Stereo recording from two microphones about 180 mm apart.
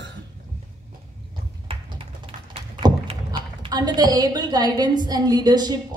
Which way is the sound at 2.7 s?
30° right (ahead or behind).